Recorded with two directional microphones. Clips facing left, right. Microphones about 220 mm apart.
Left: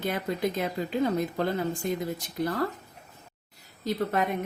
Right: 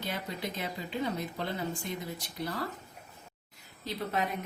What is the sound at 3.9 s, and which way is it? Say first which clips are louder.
Speech: left 6 dB; 50° left (ahead or behind).